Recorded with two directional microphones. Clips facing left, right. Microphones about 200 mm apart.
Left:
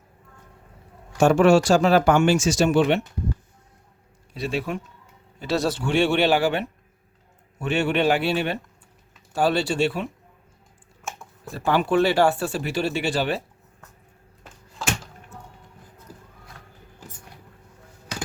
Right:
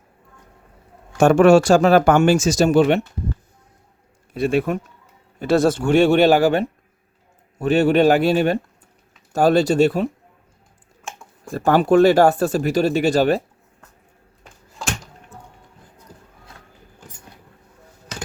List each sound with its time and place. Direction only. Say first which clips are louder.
1.2 s speech: right 4 dB; 55° right (ahead or behind)
4.4 s speech: right 8 dB; 50° right (ahead or behind)
11.0 s a sound: even; centre (ahead or behind)
11.5 s speech: right 6 dB; 45° right (ahead or behind)